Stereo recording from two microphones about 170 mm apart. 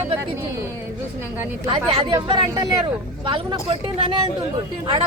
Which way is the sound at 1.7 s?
30° right (ahead or behind).